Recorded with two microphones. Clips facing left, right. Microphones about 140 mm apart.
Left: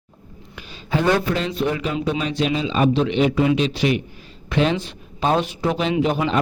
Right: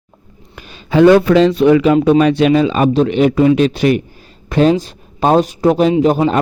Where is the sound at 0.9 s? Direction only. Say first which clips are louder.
Right 11 dB; 90° right.